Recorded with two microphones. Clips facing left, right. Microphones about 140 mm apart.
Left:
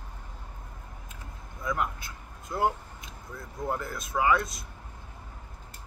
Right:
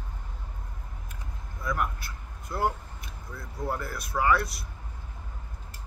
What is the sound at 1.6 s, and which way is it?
Vehicle, 20° left (ahead or behind).